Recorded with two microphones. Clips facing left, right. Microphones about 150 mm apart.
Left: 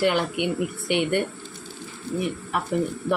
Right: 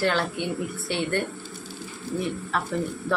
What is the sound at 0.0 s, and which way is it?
A woman's voice, 15° left (ahead or behind).